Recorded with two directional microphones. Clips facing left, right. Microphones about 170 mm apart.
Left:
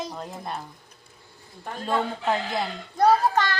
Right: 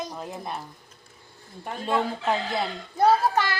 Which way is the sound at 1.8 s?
5° right (ahead or behind).